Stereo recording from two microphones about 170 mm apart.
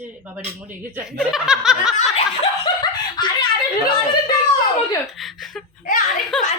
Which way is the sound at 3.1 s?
25° left (ahead or behind).